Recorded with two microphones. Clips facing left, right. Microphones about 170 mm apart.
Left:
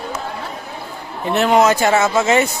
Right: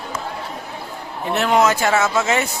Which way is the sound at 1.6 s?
20° left (ahead or behind).